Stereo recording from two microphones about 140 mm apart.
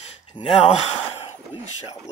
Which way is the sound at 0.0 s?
50° left (ahead or behind).